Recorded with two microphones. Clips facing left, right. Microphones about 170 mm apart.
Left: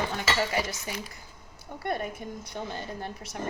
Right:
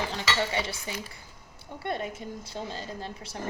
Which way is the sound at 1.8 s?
25° right (ahead or behind).